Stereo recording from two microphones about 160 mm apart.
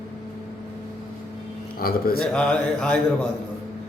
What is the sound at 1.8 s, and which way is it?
Speech, 70° left (ahead or behind).